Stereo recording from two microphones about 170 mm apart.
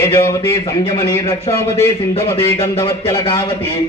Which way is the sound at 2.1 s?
35° left (ahead or behind).